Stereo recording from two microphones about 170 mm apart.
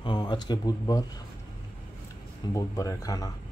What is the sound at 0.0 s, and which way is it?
Speech, 25° left (ahead or behind).